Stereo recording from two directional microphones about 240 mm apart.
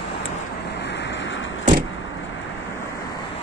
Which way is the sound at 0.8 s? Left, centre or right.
Left.